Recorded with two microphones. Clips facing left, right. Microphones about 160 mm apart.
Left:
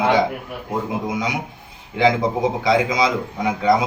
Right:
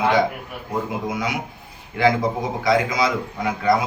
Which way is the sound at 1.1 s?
20° left (ahead or behind).